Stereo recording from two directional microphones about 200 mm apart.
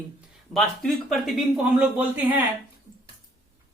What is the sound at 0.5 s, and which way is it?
Speech, centre (ahead or behind).